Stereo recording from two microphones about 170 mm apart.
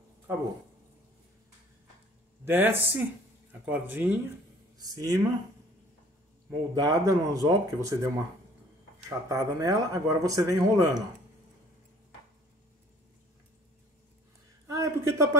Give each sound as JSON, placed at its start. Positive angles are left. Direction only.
{"t": 2.4, "sound": "speech", "side_deg": -10}
{"t": 4.7, "sound": "speech", "side_deg": -20}
{"t": 6.5, "sound": "speech", "side_deg": -20}
{"t": 9.3, "sound": "speech", "side_deg": -15}
{"t": 14.7, "sound": "a sound", "side_deg": -20}